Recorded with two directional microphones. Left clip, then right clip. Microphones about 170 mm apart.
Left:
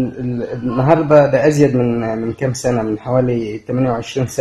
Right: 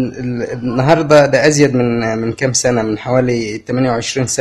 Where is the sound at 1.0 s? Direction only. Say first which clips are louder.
Right 2 dB; 10° right (ahead or behind).